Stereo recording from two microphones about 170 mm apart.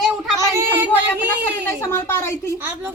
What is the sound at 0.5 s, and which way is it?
Speech, 15° right (ahead or behind).